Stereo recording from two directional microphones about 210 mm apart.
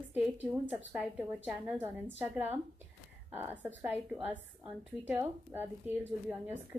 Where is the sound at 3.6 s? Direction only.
5° right (ahead or behind).